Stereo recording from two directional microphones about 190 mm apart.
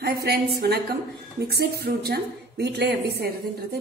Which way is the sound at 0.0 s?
55° right (ahead or behind).